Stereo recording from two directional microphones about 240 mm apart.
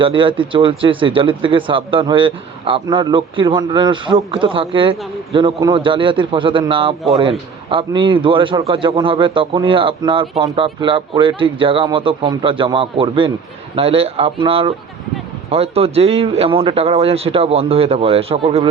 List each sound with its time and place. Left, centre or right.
0.0 s a man's voice: right